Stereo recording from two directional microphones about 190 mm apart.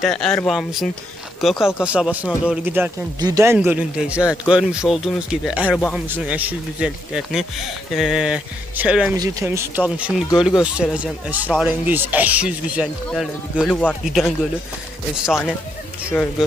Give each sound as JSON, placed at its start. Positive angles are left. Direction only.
{"t": 0.0, "sound": "speech", "side_deg": 5}
{"t": 3.5, "sound": "speech", "side_deg": -5}
{"t": 9.1, "sound": "speech", "side_deg": -15}
{"t": 16.1, "sound": "speech", "side_deg": 5}